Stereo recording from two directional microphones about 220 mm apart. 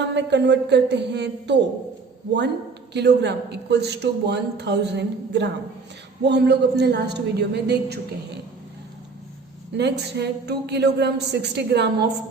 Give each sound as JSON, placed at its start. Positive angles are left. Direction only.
{"t": 0.0, "sound": "a man's voice", "side_deg": -50}
{"t": 2.9, "sound": "a man's voice", "side_deg": -50}
{"t": 9.7, "sound": "a man's voice", "side_deg": -50}